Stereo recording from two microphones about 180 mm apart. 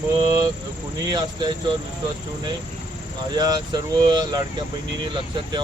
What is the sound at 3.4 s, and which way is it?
Speech, 20° right (ahead or behind).